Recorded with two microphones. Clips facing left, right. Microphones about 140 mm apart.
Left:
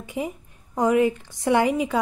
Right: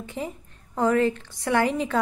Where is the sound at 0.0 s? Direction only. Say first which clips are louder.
Left 3 dB; 15° left (ahead or behind).